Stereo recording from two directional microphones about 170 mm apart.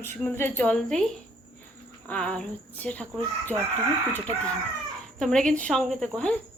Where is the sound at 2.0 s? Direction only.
5° left (ahead or behind).